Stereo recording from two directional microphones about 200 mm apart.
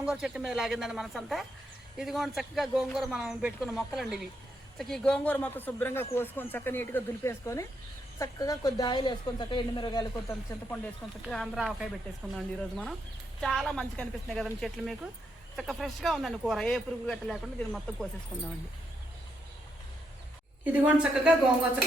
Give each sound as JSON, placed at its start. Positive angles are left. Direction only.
{"t": 0.0, "sound": "a woman's voice", "side_deg": -5}
{"t": 11.3, "sound": "speech", "side_deg": 0}
{"t": 20.7, "sound": "a woman's voice", "side_deg": -5}